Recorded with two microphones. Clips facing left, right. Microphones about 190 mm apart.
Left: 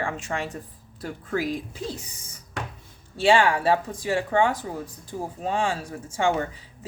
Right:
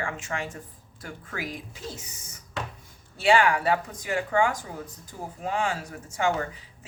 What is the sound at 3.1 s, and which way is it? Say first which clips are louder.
Speech: left 2 dB; 30° left (ahead or behind).